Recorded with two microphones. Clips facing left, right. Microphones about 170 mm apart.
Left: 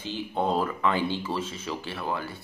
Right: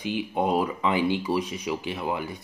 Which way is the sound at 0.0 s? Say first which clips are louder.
Right 2 dB; 15° right (ahead or behind).